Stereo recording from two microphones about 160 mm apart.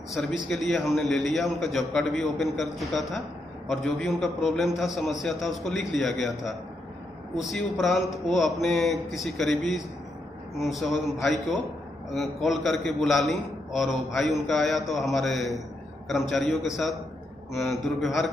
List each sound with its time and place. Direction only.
0.1 s a man's voice: centre (ahead or behind)